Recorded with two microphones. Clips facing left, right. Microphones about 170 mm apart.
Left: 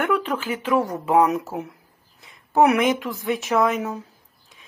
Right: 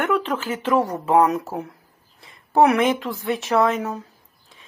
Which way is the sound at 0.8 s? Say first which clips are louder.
Right 1 dB; 35° right (ahead or behind).